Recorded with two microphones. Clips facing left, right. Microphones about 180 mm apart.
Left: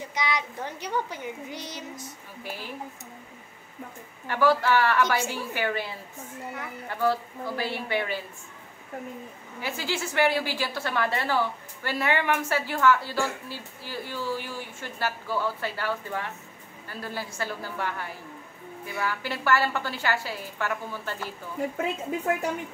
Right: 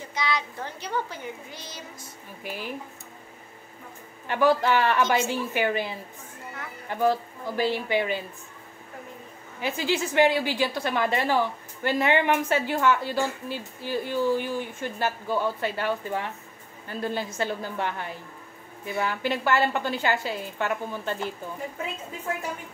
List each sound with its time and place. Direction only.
0.1 s a child's voice: 15° left (ahead or behind)
2.4 s speech: 15° right (ahead or behind)
4.3 s a woman's voice: 20° right (ahead or behind)
9.6 s a woman's voice: 20° right (ahead or behind)